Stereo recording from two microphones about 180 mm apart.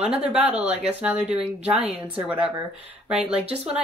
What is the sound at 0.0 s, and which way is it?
Speech, 5° right (ahead or behind).